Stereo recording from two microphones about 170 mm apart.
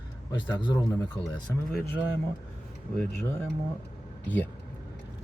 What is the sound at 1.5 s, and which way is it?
Speech, 10° left (ahead or behind).